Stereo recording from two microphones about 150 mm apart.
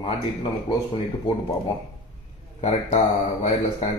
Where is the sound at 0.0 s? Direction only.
35° left (ahead or behind).